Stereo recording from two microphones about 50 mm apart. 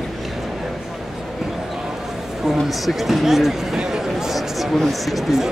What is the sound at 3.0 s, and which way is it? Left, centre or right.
Speech, centre.